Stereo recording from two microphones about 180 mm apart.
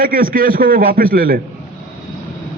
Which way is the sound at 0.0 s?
50° right (ahead or behind).